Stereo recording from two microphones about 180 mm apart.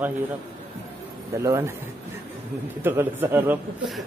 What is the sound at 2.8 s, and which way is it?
Speech, 10° right (ahead or behind).